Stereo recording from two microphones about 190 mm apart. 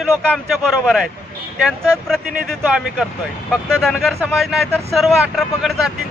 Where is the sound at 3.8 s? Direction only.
Centre (ahead or behind).